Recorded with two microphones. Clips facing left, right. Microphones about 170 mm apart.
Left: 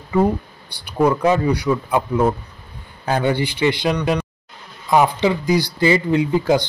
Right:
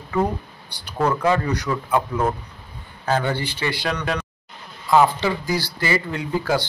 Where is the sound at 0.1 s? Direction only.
10° left (ahead or behind).